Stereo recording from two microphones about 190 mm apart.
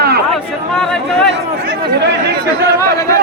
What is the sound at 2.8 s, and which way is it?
Speech, 15° left (ahead or behind).